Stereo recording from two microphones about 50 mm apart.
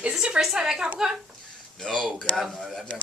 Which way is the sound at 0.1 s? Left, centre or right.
Centre.